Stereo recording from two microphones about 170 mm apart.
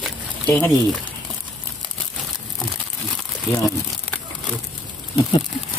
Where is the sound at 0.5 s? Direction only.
5° left (ahead or behind).